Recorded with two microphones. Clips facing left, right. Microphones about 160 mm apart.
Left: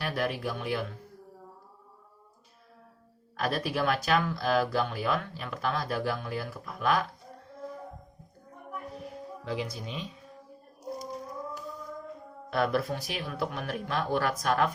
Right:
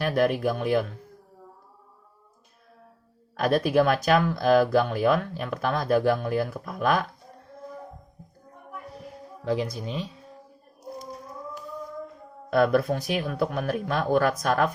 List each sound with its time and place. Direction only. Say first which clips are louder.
0.0 s speech: right 8 dB; 45° right (ahead or behind)
3.4 s speech: right 8 dB; 45° right (ahead or behind)
9.4 s speech: right 8 dB; 40° right (ahead or behind)
12.5 s speech: right 7 dB; 45° right (ahead or behind)